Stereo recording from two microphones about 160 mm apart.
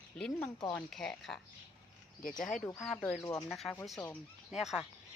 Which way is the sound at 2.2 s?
60° left (ahead or behind).